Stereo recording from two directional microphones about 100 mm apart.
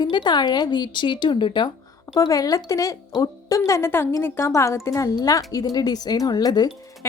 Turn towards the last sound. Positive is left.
turn(degrees=30)  # may be behind; listen again after turning